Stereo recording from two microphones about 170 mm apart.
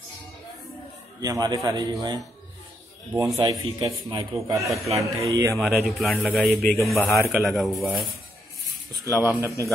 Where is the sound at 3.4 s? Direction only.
25° right (ahead or behind).